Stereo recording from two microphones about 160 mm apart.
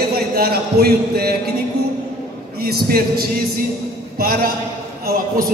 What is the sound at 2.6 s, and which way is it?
Speech, 70° right (ahead or behind).